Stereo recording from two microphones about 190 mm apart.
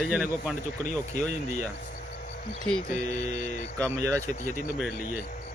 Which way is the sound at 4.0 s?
15° right (ahead or behind).